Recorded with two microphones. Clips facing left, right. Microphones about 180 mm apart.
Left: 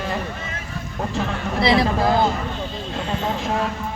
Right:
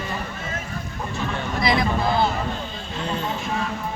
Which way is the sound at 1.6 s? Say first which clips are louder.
Left 4 dB; 30° left (ahead or behind).